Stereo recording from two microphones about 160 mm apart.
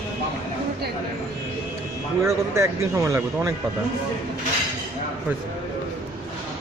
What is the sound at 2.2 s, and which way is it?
A man's voice, 15° right (ahead or behind).